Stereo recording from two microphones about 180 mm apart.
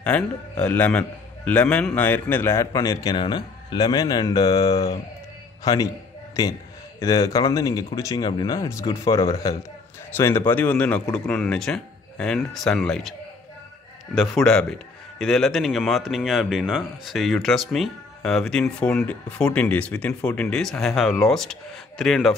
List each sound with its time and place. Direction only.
0.0 s a man's voice: 5° left (ahead or behind)
7.0 s a man's voice: 20° left (ahead or behind); by 13.1 s 5° left (ahead or behind)
14.1 s a man's voice: centre (ahead or behind)